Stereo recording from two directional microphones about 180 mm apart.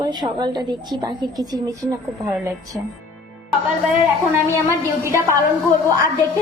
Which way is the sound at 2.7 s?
10° right (ahead or behind).